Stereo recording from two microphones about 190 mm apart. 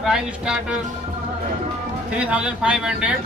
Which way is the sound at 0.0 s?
5° right (ahead or behind).